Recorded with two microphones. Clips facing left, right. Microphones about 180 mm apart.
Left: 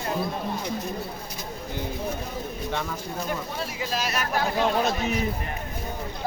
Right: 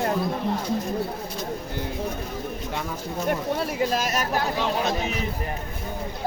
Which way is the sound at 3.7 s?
50° right (ahead or behind).